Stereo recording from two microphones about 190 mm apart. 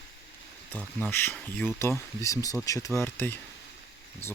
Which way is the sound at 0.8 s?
10° left (ahead or behind).